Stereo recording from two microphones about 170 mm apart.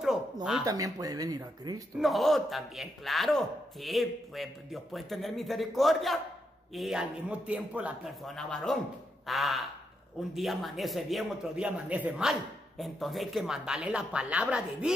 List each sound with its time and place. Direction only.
0.0 s a sound: 5° right (ahead or behind)
0.7 s speech: 20° right (ahead or behind)
2.0 s speech: centre (ahead or behind)
9.2 s quack: centre (ahead or behind)
10.3 s speech: centre (ahead or behind)